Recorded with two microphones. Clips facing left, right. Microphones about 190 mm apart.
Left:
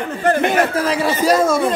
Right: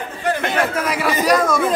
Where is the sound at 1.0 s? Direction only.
25° left (ahead or behind).